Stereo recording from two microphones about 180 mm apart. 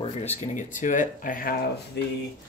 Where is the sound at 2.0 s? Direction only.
65° left (ahead or behind).